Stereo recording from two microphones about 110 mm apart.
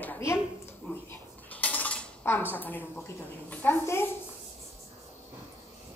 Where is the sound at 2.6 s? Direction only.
15° left (ahead or behind).